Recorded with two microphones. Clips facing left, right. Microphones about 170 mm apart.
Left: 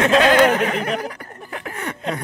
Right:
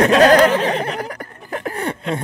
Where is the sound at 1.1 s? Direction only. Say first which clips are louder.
Right 5 dB; 40° right (ahead or behind).